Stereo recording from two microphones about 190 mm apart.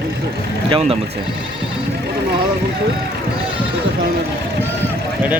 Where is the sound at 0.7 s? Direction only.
30° right (ahead or behind).